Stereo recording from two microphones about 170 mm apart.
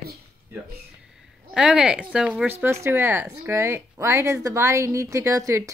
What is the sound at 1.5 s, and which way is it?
Speech, 5° right (ahead or behind).